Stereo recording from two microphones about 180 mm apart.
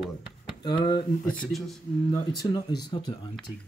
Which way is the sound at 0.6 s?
25° left (ahead or behind).